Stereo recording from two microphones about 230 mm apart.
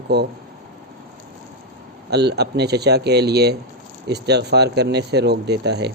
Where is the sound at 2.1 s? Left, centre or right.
Right.